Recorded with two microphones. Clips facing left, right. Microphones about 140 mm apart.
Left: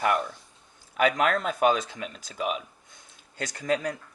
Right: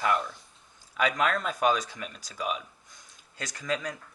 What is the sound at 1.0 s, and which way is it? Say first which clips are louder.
Speech: left 3 dB; 30° left (ahead or behind).